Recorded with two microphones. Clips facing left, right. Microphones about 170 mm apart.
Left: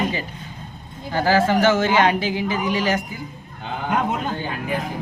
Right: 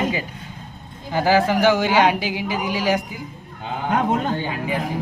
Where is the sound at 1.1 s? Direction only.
15° right (ahead or behind).